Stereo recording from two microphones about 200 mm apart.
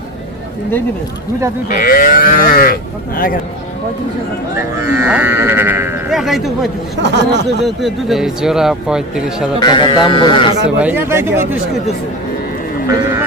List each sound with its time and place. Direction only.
1.6 s speech: 45° left (ahead or behind)
4.9 s speech: 10° right (ahead or behind)
7.0 s speech: 60° right (ahead or behind)
7.6 s speech: centre (ahead or behind)
9.6 s speech: 25° left (ahead or behind)
10.8 s speech: 10° right (ahead or behind)